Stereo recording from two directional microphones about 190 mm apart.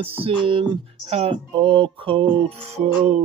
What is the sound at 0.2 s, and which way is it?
Music, 25° right (ahead or behind).